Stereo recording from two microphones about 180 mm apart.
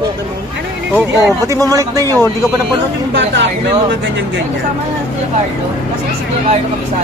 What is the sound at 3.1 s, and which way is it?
Speech, 80° right.